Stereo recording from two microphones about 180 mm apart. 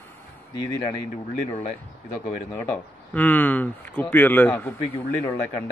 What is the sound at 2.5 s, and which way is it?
Speech, 10° left (ahead or behind).